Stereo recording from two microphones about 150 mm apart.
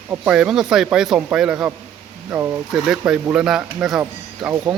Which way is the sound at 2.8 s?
5° right (ahead or behind).